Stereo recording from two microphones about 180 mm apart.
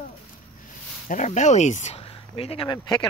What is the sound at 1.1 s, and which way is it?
Speech, 40° left (ahead or behind).